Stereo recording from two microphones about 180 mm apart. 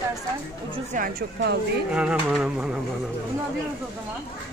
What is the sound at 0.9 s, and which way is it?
Speech, 50° right (ahead or behind).